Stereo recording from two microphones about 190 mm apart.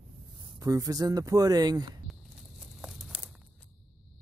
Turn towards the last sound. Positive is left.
turn(degrees=0)  # may be behind; listen again after turning